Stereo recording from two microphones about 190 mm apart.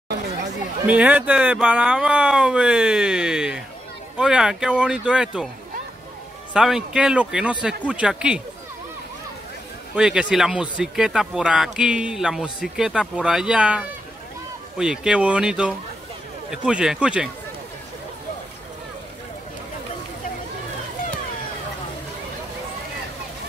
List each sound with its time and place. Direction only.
0.8 s speech: 5° right (ahead or behind)
6.5 s speech: 5° right (ahead or behind)
9.9 s speech: 5° right (ahead or behind)